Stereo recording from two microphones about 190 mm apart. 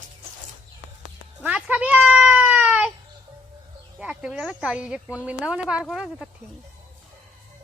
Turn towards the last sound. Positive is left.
turn(degrees=0)  # may be behind; listen again after turning